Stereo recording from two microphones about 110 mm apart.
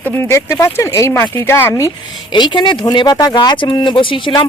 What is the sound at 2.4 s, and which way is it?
Speech, 45° left (ahead or behind).